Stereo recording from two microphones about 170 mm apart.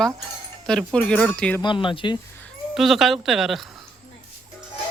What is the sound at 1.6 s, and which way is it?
Speech, 30° left (ahead or behind).